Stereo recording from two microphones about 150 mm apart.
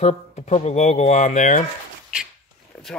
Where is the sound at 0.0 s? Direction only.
45° left (ahead or behind).